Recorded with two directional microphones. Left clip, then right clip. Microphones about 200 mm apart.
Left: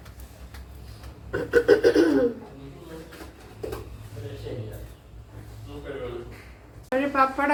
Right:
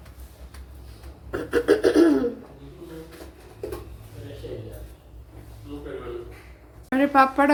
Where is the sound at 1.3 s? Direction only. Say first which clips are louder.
Left 2 dB; 50° right (ahead or behind).